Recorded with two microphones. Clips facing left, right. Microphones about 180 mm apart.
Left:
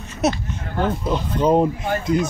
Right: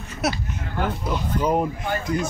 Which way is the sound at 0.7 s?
25° left (ahead or behind).